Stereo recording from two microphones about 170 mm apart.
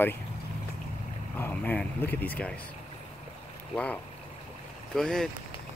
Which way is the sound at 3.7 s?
10° left (ahead or behind).